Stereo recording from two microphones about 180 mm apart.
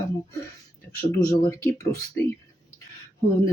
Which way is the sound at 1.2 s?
20° left (ahead or behind).